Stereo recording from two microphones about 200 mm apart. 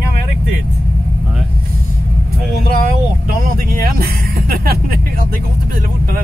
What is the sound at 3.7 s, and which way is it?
Speech, 45° right (ahead or behind).